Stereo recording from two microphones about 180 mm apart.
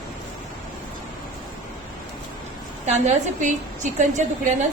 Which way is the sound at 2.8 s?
40° right (ahead or behind).